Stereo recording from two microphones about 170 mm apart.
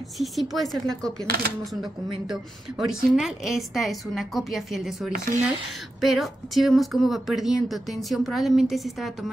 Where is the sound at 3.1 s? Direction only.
Centre (ahead or behind).